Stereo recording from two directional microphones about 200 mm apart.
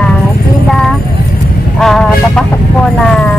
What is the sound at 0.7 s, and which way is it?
Music, centre (ahead or behind).